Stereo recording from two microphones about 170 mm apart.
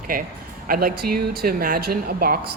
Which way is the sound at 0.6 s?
60° right (ahead or behind).